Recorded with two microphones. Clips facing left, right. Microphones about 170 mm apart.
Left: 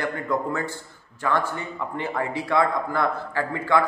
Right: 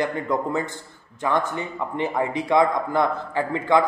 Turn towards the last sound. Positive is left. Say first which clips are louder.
# right 2 dB
turn(degrees=-20)  # may be behind; listen again after turning